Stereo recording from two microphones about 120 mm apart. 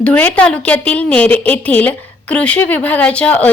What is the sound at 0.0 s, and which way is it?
Speech, 10° left (ahead or behind).